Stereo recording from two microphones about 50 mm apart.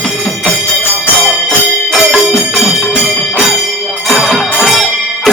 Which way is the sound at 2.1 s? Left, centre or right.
Centre.